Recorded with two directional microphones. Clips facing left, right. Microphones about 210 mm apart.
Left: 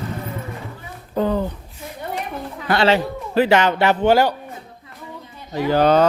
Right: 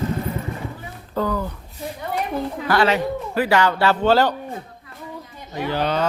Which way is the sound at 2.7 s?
25° left (ahead or behind).